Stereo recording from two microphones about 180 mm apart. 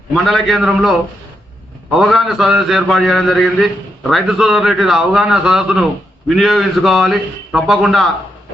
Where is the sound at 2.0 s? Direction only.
Centre (ahead or behind).